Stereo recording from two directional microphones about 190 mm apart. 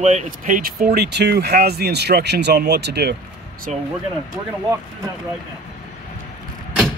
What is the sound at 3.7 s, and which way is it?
Speech, 40° right (ahead or behind).